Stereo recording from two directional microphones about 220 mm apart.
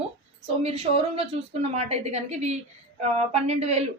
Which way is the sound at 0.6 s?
25° right (ahead or behind).